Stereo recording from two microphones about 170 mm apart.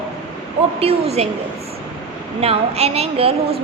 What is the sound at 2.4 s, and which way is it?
A woman's voice, 35° right (ahead or behind).